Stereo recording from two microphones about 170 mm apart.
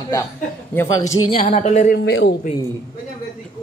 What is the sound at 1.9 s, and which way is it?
Speech, 90° left.